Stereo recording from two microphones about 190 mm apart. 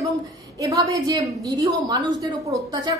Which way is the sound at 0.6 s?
20° right (ahead or behind).